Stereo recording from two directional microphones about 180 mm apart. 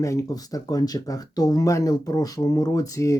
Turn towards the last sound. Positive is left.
turn(degrees=20)  # may be behind; listen again after turning